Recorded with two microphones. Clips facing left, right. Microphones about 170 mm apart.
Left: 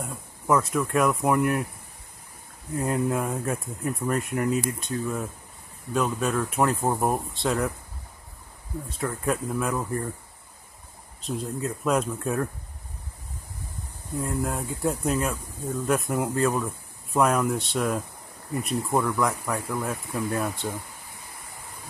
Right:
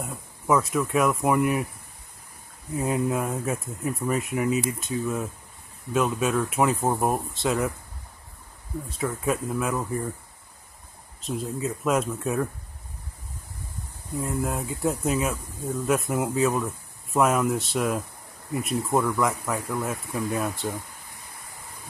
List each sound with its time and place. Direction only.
0.0 s speech: centre (ahead or behind)
2.7 s speech: 5° right (ahead or behind)
8.8 s speech: centre (ahead or behind)
11.1 s speech: centre (ahead or behind)
14.1 s speech: centre (ahead or behind)